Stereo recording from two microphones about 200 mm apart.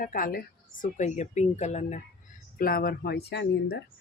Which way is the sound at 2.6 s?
50° left (ahead or behind).